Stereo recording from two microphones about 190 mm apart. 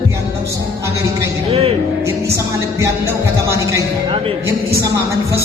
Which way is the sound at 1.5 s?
30° right (ahead or behind).